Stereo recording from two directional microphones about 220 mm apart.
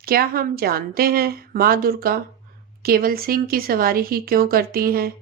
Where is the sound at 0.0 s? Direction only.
40° right (ahead or behind).